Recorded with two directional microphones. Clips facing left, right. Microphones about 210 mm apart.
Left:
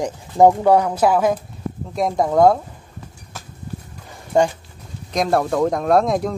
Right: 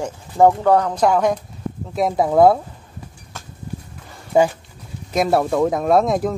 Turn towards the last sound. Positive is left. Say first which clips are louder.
# even
turn(degrees=0)  # may be behind; listen again after turning